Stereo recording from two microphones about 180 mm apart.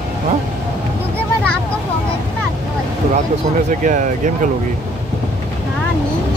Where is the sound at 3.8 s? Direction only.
45° right (ahead or behind).